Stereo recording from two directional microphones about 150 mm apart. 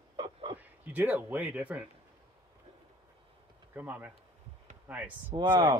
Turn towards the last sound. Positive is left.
turn(degrees=-25)  # may be behind; listen again after turning